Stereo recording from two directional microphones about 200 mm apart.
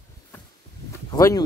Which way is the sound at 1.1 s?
20° left (ahead or behind).